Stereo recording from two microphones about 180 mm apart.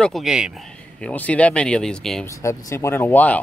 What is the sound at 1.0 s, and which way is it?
Speech, 5° left (ahead or behind).